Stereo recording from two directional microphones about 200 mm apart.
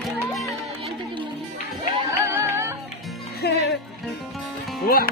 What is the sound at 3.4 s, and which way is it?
Music, 55° left (ahead or behind).